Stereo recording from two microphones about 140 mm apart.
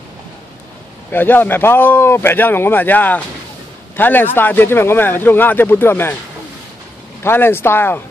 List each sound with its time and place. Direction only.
1.1 s speech: 15° left (ahead or behind)
7.2 s speech: 15° left (ahead or behind)